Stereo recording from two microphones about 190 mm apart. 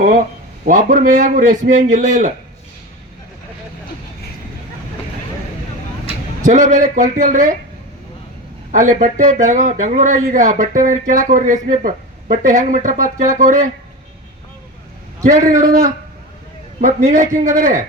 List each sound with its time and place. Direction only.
0.6 s a man's voice: 45° right (ahead or behind)
6.4 s a man's voice: 40° right (ahead or behind)
8.7 s a man's voice: 45° right (ahead or behind)
15.2 s a man's voice: 45° right (ahead or behind)